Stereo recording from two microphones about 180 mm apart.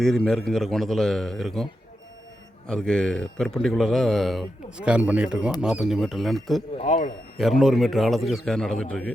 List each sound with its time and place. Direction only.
0.3 s speech: 5° left (ahead or behind)
2.6 s speech: 5° left (ahead or behind)
6.7 s speech: 40° left (ahead or behind)
7.6 s speech: centre (ahead or behind)